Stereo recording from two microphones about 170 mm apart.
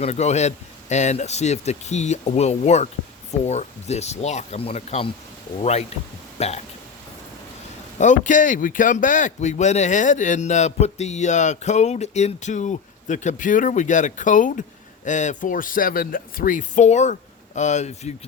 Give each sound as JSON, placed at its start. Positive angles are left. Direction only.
{"t": 0.0, "sound": "speech", "side_deg": 40}
{"t": 6.4, "sound": "speech", "side_deg": 40}
{"t": 7.9, "sound": "speech", "side_deg": 45}